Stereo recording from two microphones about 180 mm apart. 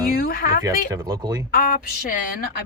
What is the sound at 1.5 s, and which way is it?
Speech, 50° left (ahead or behind).